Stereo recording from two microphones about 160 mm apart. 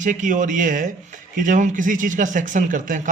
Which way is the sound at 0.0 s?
55° right (ahead or behind).